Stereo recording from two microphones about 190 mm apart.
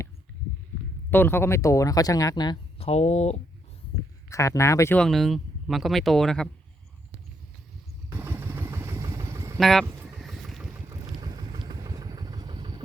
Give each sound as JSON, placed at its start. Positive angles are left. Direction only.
{"t": 1.1, "sound": "speech", "side_deg": 10}
{"t": 4.3, "sound": "speech", "side_deg": 15}
{"t": 8.1, "sound": "vehicle", "side_deg": -15}
{"t": 9.6, "sound": "speech", "side_deg": 0}
{"t": 9.8, "sound": "speech", "side_deg": -15}
{"t": 10.2, "sound": "vehicle", "side_deg": 0}
{"t": 11.2, "sound": "vehicle", "side_deg": -20}